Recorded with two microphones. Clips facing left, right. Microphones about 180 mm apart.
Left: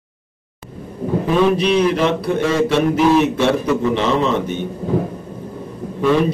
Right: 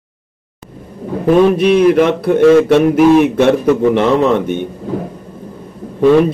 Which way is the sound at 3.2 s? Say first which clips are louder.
Right 5 dB; 55° right (ahead or behind).